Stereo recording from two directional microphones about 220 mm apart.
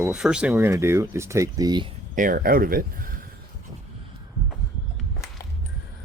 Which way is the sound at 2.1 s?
40° right (ahead or behind).